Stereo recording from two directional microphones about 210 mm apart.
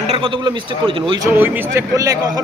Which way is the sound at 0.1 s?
25° right (ahead or behind).